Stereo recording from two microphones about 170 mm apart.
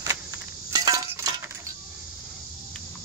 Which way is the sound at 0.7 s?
20° right (ahead or behind).